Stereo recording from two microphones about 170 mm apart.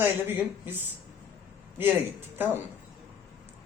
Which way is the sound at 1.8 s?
10° right (ahead or behind).